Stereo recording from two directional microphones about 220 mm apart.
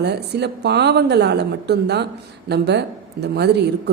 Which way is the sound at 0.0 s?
50° right (ahead or behind).